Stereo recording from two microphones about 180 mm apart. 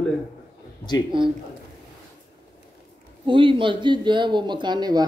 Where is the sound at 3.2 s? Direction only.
25° right (ahead or behind).